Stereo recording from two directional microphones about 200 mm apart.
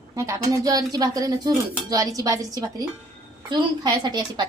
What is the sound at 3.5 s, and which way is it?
Speech, 20° right (ahead or behind).